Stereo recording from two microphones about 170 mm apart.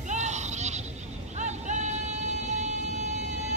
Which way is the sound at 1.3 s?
45° right (ahead or behind).